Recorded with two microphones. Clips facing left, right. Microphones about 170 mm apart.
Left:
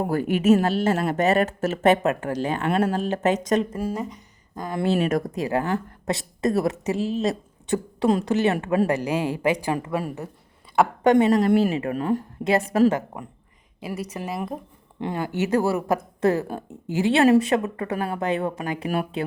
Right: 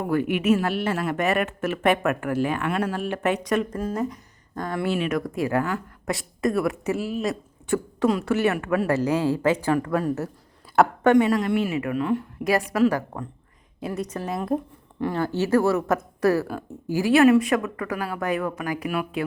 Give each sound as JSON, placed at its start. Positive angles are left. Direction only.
{"t": 0.0, "sound": "speech", "side_deg": 40}
{"t": 3.5, "sound": "speech", "side_deg": 25}
{"t": 3.8, "sound": "speech", "side_deg": 5}
{"t": 4.9, "sound": "speech", "side_deg": 40}
{"t": 5.2, "sound": "a woman's voice", "side_deg": 20}
{"t": 11.0, "sound": "speech", "side_deg": 25}
{"t": 11.3, "sound": "speech", "side_deg": 35}
{"t": 12.5, "sound": "speech", "side_deg": 25}
{"t": 13.8, "sound": "a woman's voice", "side_deg": 5}
{"t": 15.0, "sound": "speech", "side_deg": 15}